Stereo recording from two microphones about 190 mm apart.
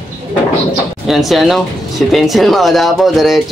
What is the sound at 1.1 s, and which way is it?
Speech, centre (ahead or behind).